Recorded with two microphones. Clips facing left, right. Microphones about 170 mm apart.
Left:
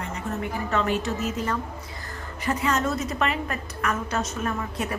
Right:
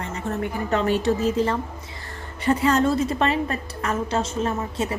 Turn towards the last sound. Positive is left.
turn(degrees=-25)  # may be behind; listen again after turning